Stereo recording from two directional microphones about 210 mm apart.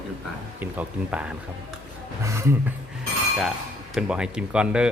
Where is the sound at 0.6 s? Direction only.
5° right (ahead or behind).